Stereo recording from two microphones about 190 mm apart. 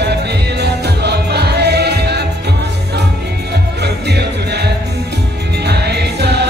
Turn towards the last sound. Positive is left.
turn(degrees=-60)  # may be behind; listen again after turning